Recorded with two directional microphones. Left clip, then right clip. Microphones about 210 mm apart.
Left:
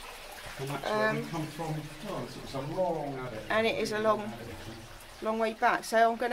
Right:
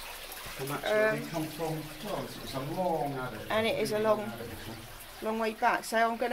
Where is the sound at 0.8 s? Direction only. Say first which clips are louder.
Right 2 dB; 25° left (ahead or behind).